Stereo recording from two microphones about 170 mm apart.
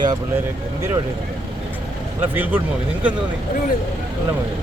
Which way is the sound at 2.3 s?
10° right (ahead or behind).